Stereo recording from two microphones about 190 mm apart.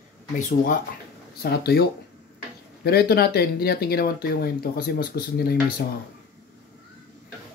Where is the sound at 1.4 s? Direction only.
55° left (ahead or behind).